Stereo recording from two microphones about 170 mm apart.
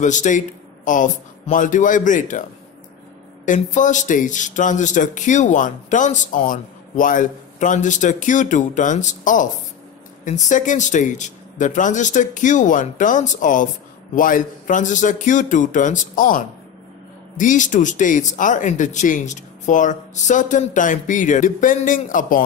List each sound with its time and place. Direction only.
0.0 s speech: 45° left (ahead or behind)
3.4 s speech: 45° left (ahead or behind)